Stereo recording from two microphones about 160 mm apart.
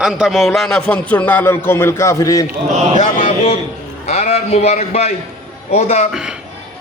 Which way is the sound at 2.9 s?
50° left (ahead or behind).